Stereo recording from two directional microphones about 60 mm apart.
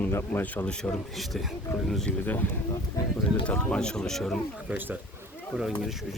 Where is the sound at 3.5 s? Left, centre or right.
Centre.